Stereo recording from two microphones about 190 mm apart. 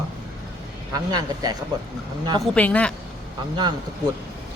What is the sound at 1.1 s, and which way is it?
Speech, 20° right (ahead or behind).